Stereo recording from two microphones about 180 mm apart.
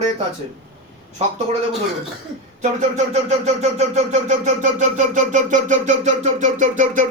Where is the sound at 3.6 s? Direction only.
40° right (ahead or behind).